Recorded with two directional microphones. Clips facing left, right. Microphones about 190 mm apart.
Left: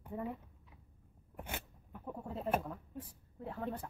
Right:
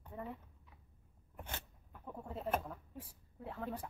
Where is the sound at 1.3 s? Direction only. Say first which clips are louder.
Left 4 dB; 10° left (ahead or behind).